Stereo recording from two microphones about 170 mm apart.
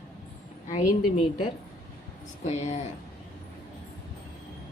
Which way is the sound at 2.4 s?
40° left (ahead or behind).